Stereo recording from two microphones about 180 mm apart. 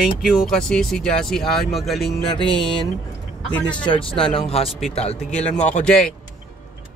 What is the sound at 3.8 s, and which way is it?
Speech, 30° left (ahead or behind).